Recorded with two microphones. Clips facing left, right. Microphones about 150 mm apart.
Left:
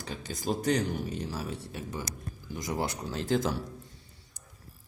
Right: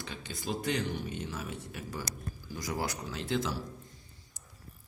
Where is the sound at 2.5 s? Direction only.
20° left (ahead or behind).